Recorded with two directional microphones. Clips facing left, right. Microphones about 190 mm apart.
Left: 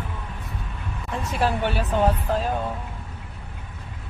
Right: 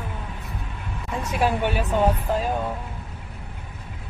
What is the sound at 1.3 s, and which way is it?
Speech, 10° right (ahead or behind).